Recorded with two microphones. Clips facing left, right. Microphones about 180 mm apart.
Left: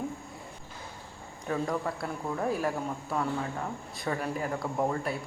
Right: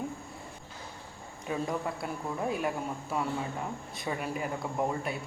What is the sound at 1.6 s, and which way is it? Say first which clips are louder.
Speech: left 2 dB; centre (ahead or behind).